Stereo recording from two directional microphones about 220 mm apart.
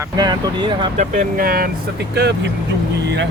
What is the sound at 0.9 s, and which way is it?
Speech, 35° right (ahead or behind).